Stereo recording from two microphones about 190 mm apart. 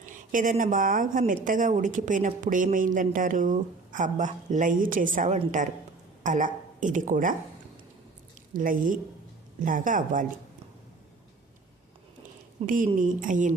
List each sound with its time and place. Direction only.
0.0 s speech: 45° right (ahead or behind)
8.5 s speech: 45° right (ahead or behind)
12.6 s speech: 45° right (ahead or behind)